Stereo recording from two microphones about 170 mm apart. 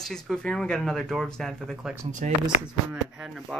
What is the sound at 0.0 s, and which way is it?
Speech, centre (ahead or behind).